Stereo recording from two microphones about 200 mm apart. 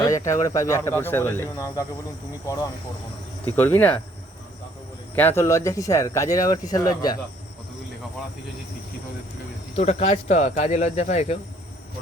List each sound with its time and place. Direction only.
0.0 s speech: 15° left (ahead or behind)
5.1 s speech: 10° left (ahead or behind)
9.7 s speech: 30° left (ahead or behind)